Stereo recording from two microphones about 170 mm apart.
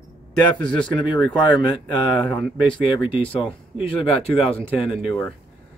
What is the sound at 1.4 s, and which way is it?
Speech, 25° left (ahead or behind).